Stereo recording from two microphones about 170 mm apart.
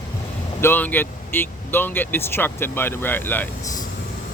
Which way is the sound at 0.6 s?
10° left (ahead or behind).